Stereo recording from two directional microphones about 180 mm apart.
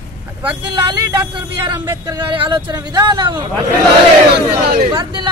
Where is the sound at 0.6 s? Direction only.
20° right (ahead or behind).